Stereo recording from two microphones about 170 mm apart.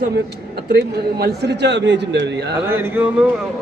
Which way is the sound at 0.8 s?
75° right (ahead or behind).